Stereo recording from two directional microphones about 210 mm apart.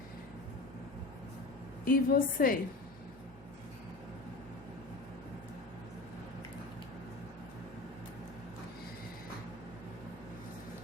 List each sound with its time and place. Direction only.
1.8 s a woman's voice: 40° left (ahead or behind)